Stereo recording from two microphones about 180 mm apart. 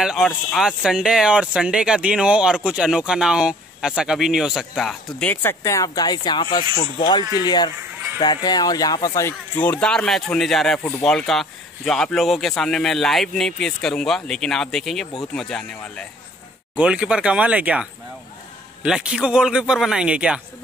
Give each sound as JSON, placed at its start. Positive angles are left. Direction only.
{"t": 0.0, "sound": "speech", "side_deg": 0}
{"t": 16.7, "sound": "speech", "side_deg": -5}